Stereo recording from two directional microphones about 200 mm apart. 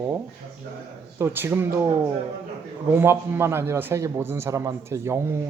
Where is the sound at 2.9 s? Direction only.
10° right (ahead or behind).